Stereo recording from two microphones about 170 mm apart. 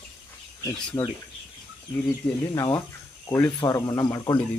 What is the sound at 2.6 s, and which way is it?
Speech, 20° left (ahead or behind).